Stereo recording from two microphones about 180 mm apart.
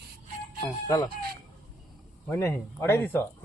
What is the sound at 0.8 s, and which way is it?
Speech, 20° left (ahead or behind).